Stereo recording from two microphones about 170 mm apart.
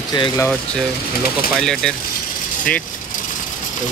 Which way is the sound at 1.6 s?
5° left (ahead or behind).